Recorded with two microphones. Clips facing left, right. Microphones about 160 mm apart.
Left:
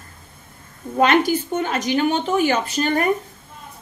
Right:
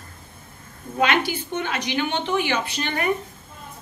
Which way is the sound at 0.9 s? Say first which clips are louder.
Left 5 dB; 45° left (ahead or behind).